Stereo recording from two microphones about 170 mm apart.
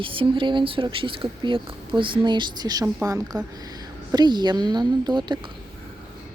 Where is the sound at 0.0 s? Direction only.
30° right (ahead or behind).